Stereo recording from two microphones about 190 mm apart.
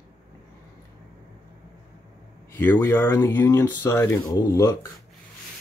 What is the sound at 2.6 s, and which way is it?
Speech, 10° left (ahead or behind).